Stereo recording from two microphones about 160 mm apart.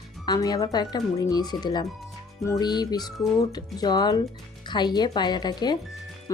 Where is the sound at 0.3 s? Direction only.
25° left (ahead or behind).